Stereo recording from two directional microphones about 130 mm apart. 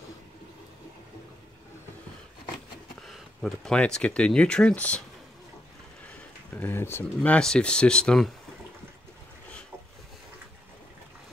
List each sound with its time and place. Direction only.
3.0 s speech: centre (ahead or behind)
6.6 s speech: 15° left (ahead or behind)
7.2 s speech: 5° left (ahead or behind)